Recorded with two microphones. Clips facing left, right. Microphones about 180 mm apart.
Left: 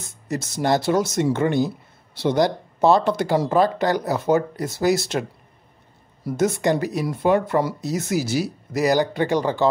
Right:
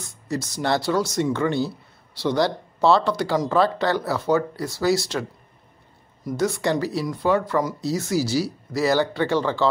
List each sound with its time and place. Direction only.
0.0 s speech: 20° left (ahead or behind)
6.2 s speech: 20° left (ahead or behind)